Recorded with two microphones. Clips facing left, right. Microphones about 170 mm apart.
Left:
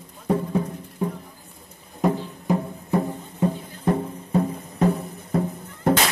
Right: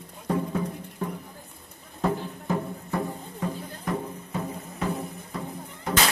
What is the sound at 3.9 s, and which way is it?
Music, 35° left (ahead or behind).